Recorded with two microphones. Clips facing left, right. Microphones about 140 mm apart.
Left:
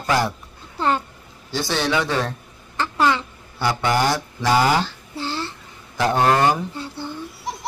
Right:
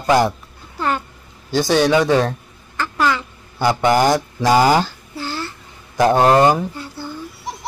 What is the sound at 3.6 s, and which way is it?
Speech, 15° right (ahead or behind).